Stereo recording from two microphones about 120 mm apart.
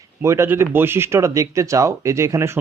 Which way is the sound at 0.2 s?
20° right (ahead or behind).